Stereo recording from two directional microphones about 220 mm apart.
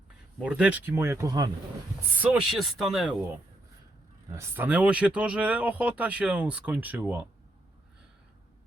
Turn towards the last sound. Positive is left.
turn(degrees=-10)  # may be behind; listen again after turning